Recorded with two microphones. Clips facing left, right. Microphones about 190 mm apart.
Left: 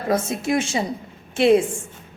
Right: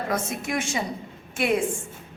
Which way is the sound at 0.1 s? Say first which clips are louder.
Left 10 dB; 25° left (ahead or behind).